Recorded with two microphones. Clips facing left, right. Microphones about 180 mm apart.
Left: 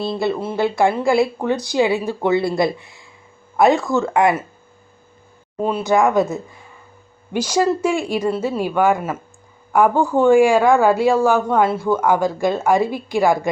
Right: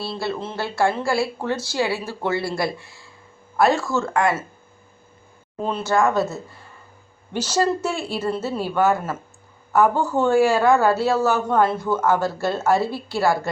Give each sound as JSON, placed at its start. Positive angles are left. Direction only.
{"t": 0.0, "sound": "speech", "side_deg": 15}
{"t": 5.6, "sound": "speech", "side_deg": 15}